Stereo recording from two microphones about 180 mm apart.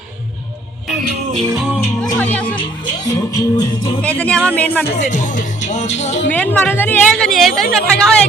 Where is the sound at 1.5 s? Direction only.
5° right (ahead or behind).